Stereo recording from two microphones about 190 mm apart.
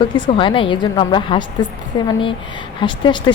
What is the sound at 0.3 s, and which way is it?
A woman's voice, 25° left (ahead or behind).